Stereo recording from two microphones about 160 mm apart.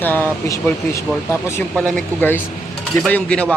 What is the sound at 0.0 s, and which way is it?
Speech, 10° left (ahead or behind).